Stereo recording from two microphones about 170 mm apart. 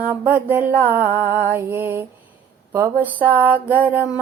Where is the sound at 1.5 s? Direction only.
15° right (ahead or behind).